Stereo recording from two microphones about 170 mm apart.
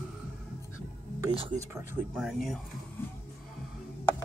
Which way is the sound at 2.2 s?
Centre (ahead or behind).